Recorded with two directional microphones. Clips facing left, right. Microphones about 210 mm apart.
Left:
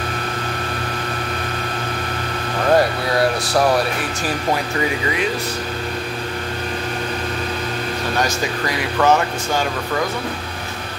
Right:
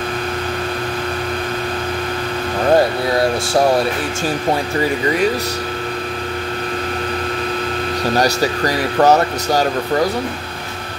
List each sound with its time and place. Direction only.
8.2 s speech: 35° right (ahead or behind)